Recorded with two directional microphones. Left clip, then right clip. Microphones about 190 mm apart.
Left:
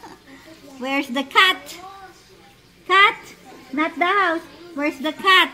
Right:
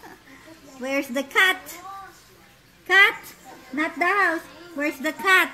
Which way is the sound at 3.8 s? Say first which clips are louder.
Left 2 dB; 10° left (ahead or behind).